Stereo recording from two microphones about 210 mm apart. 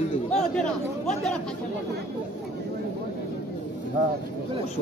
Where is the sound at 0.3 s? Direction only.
Centre (ahead or behind).